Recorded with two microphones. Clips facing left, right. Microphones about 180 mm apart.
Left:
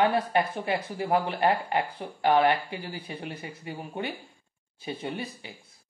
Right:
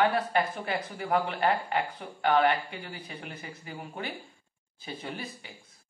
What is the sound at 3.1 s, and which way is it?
Speech, 30° left (ahead or behind).